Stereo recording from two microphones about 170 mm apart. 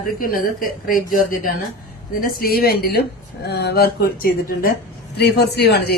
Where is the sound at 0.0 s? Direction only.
55° left (ahead or behind).